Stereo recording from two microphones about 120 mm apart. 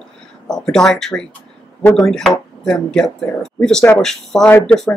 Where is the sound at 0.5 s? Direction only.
5° left (ahead or behind).